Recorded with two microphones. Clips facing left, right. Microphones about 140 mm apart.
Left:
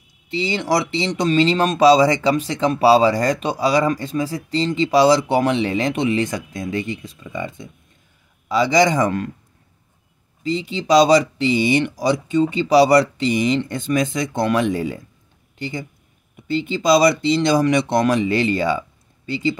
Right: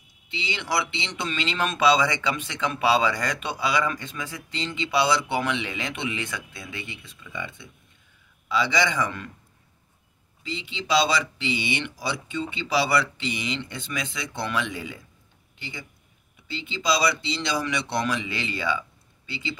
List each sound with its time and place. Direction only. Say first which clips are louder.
0.3 s speech: left 9 dB; 40° left (ahead or behind)
10.4 s speech: left 11 dB; 40° left (ahead or behind)